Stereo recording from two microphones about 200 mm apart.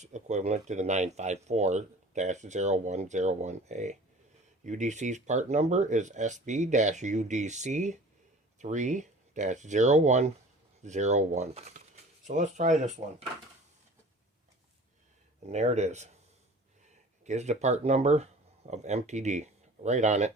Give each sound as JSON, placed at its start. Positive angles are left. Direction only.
{"t": 0.0, "sound": "speech", "side_deg": -35}
{"t": 15.4, "sound": "speech", "side_deg": -35}